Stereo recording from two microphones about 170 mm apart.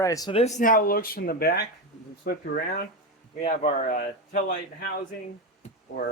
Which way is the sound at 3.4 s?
50° left (ahead or behind).